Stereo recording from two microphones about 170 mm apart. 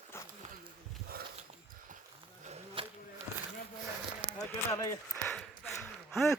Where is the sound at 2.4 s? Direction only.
40° right (ahead or behind).